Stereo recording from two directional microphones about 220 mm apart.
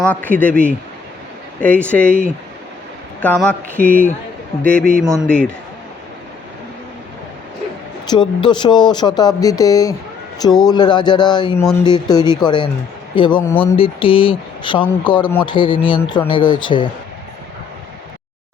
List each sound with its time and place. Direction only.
0.0 s speech: 5° left (ahead or behind)
1.6 s speech: 5° left (ahead or behind)
8.1 s speech: 20° left (ahead or behind)